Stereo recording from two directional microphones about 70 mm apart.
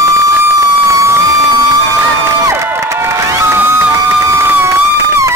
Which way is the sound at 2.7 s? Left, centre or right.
Right.